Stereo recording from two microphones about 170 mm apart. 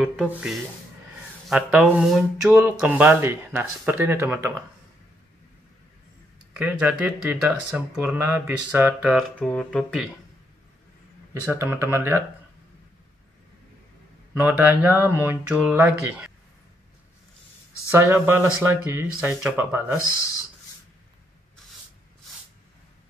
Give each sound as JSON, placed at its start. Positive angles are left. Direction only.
{"t": 0.0, "sound": "speech", "side_deg": 5}
{"t": 6.5, "sound": "speech", "side_deg": -5}
{"t": 9.4, "sound": "speech", "side_deg": 5}
{"t": 11.5, "sound": "speech", "side_deg": -15}
{"t": 14.3, "sound": "speech", "side_deg": -10}
{"t": 17.9, "sound": "speech", "side_deg": -15}